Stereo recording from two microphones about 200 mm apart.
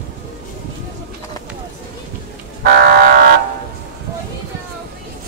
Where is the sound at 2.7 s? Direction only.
50° right (ahead or behind).